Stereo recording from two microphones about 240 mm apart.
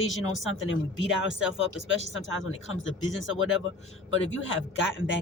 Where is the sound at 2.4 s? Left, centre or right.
Left.